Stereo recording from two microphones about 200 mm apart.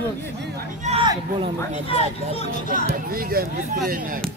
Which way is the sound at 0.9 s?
30° right (ahead or behind).